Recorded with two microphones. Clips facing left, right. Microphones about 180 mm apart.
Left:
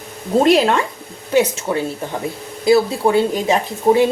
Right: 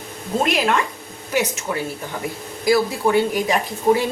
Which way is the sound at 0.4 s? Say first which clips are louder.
Left 5 dB; 30° left (ahead or behind).